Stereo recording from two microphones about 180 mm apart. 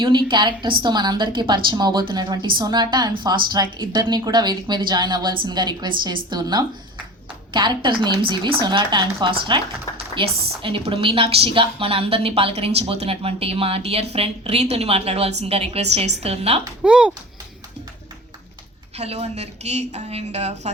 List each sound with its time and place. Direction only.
0.0 s a woman's voice: 25° right (ahead or behind)
16.8 s speech: 5° right (ahead or behind)
18.9 s a woman's voice: 35° right (ahead or behind)